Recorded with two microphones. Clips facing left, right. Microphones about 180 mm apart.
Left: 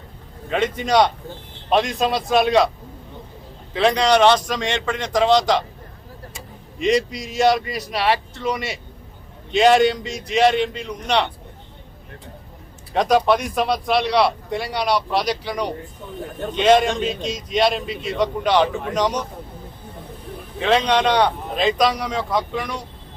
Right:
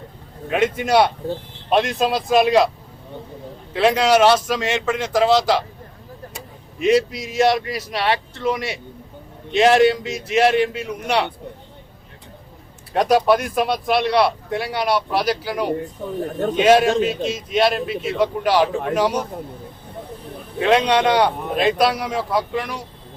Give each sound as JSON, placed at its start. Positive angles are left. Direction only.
{"t": 0.5, "sound": "speech", "side_deg": -5}
{"t": 3.7, "sound": "speech", "side_deg": -5}
{"t": 6.7, "sound": "speech", "side_deg": -5}
{"t": 12.9, "sound": "speech", "side_deg": -5}
{"t": 20.6, "sound": "speech", "side_deg": -5}